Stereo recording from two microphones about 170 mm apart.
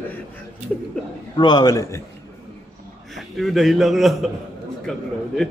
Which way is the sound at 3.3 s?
Centre (ahead or behind).